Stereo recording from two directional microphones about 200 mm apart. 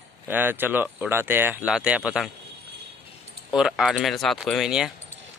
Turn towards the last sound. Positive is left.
turn(degrees=-5)  # may be behind; listen again after turning